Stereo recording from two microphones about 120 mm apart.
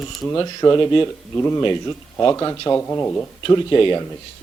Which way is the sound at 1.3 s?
25° left (ahead or behind).